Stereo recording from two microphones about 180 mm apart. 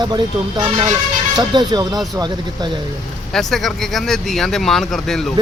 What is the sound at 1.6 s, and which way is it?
Speech, 25° right (ahead or behind).